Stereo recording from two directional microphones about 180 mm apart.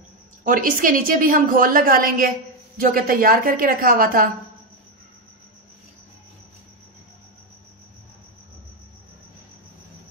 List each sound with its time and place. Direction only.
0.4 s a woman's voice: 50° right (ahead or behind)